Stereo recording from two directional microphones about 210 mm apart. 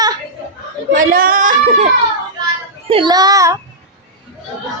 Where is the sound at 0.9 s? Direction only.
40° right (ahead or behind).